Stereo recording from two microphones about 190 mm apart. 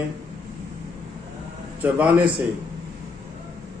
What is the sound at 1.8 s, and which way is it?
Speech, 5° right (ahead or behind).